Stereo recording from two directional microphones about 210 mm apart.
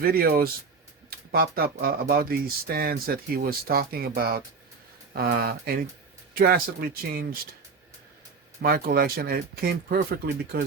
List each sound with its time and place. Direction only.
0.0 s speech: 45° right (ahead or behind)
1.1 s a sound: 45° right (ahead or behind)
1.8 s speech: 45° right (ahead or behind)
8.6 s speech: 45° right (ahead or behind)